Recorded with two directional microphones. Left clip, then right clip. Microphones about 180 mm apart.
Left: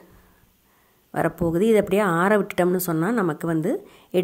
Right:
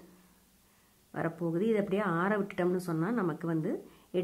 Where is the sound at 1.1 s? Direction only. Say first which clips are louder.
Left 11 dB; 40° left (ahead or behind).